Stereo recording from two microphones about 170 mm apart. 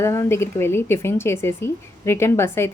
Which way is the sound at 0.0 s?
15° left (ahead or behind).